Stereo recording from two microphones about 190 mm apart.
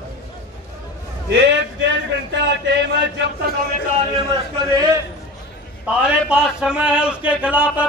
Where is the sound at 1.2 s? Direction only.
65° right (ahead or behind).